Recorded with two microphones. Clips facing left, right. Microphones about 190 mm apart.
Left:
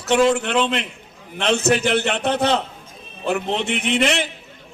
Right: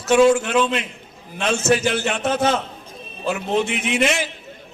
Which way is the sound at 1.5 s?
65° left (ahead or behind).